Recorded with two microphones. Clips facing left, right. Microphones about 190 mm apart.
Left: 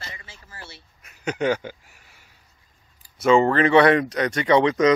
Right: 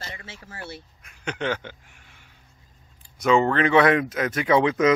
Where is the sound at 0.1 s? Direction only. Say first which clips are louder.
Right 4 dB; 85° right.